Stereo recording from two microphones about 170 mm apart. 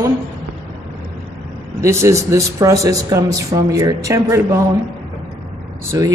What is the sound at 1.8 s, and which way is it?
Speech, 15° right (ahead or behind).